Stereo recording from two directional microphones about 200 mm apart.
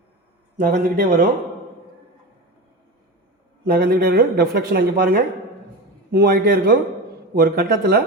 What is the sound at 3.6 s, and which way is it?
Speech, 50° right (ahead or behind).